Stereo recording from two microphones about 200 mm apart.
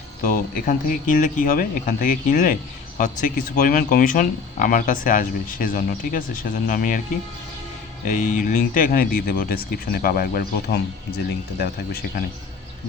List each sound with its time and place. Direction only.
0.2 s speech: 45° left (ahead or behind)
8.0 s speech: 40° left (ahead or behind)